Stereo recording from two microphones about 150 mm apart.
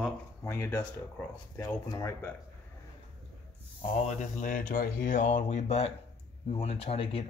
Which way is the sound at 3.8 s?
40° left (ahead or behind).